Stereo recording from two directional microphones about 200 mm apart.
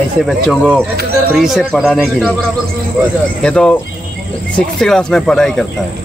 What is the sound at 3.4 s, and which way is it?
Speech, 5° left (ahead or behind).